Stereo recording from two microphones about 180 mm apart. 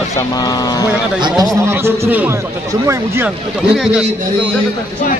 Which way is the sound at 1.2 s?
20° right (ahead or behind).